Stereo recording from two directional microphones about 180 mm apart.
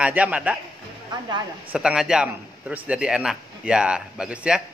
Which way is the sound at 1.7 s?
5° right (ahead or behind).